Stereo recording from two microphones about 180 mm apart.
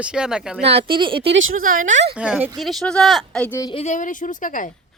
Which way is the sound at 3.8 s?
45° left (ahead or behind).